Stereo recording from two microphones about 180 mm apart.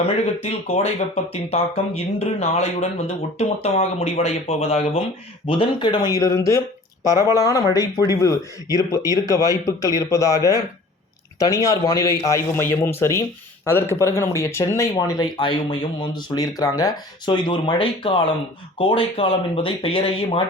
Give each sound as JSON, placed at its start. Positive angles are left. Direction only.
{"t": 0.4, "sound": "a man's voice", "side_deg": 40}